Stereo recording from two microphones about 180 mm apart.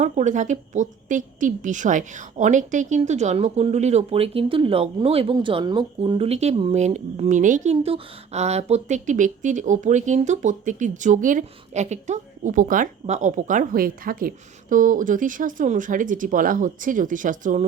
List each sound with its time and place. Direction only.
0.0 s a woman's voice: 40° right (ahead or behind)